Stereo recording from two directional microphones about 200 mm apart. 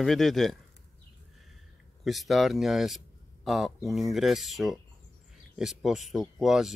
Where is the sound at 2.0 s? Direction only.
Centre (ahead or behind).